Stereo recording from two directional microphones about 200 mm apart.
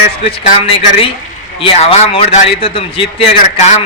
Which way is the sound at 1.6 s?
30° left (ahead or behind).